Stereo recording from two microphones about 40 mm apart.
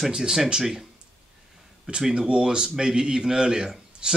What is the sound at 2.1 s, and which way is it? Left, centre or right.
Speech, right.